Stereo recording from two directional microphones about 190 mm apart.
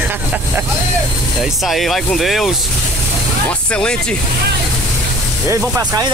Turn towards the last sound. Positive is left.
turn(degrees=-15)  # may be behind; listen again after turning